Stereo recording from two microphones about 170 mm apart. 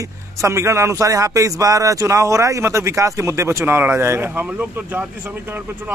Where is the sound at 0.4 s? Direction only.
15° right (ahead or behind).